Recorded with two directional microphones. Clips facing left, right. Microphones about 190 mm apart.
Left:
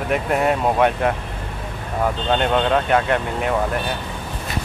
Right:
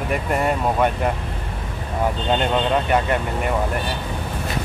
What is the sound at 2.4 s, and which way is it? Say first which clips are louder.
Speech: left 3 dB; centre (ahead or behind).